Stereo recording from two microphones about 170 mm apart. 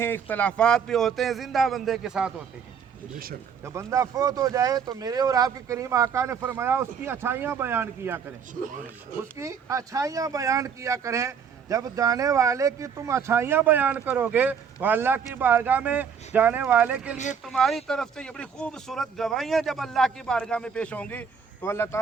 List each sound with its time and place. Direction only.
0.0 s speech: 10° left (ahead or behind); by 2.3 s 5° right (ahead or behind)
3.6 s speech: 15° right (ahead or behind)
9.4 s speech: 20° right (ahead or behind); by 21.8 s 15° left (ahead or behind)